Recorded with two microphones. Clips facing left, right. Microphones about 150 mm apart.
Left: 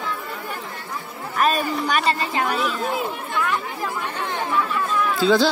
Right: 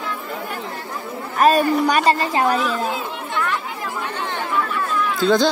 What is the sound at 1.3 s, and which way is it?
Speech, 40° right (ahead or behind).